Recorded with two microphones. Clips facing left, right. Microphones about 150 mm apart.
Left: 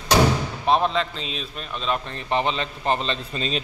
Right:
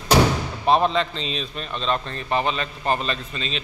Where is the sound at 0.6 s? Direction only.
Centre (ahead or behind).